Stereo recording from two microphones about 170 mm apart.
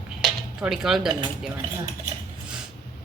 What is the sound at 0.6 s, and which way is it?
Speech, 5° right (ahead or behind).